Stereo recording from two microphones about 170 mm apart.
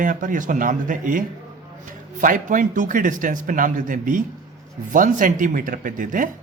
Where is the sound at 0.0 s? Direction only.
50° right (ahead or behind).